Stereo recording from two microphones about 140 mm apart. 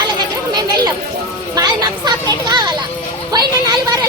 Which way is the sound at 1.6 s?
30° right (ahead or behind).